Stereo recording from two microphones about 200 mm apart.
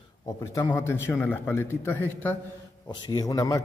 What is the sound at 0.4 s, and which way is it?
A man's voice, 15° left (ahead or behind).